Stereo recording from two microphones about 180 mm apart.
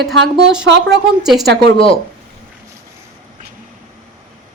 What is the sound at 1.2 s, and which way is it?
Speech, centre (ahead or behind).